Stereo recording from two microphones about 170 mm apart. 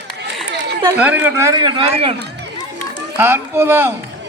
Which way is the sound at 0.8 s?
10° right (ahead or behind).